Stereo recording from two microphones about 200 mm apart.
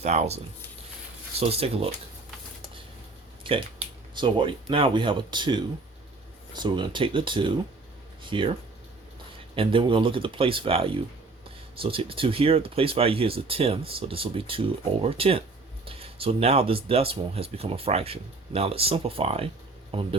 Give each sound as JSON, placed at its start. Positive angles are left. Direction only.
{"t": 0.0, "sound": "speech", "side_deg": -35}
{"t": 1.4, "sound": "speech", "side_deg": -30}
{"t": 3.4, "sound": "a sound", "side_deg": -25}
{"t": 4.7, "sound": "speech", "side_deg": -25}
{"t": 9.6, "sound": "a man's voice", "side_deg": -25}